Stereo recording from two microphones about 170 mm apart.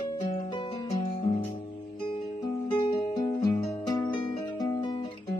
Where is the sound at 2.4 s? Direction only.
25° left (ahead or behind).